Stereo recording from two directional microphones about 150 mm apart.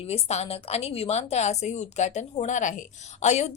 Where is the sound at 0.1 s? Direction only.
45° left (ahead or behind).